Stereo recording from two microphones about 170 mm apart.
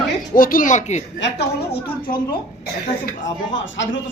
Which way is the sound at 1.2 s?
80° left.